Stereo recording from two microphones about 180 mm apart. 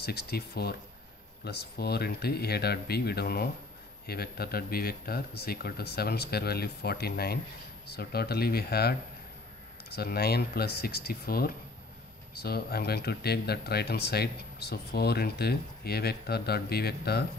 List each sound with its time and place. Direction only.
0.0 s speech: 60° left (ahead or behind)